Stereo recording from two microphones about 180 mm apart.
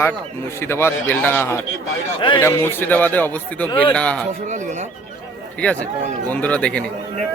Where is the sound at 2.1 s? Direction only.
25° left (ahead or behind).